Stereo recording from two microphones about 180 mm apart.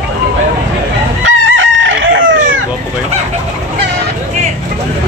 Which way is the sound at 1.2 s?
90° right.